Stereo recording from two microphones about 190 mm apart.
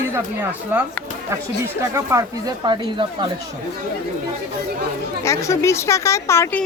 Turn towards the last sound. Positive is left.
turn(degrees=10)  # may be behind; listen again after turning